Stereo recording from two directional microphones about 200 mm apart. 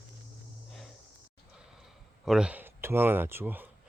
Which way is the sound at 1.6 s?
5° right (ahead or behind).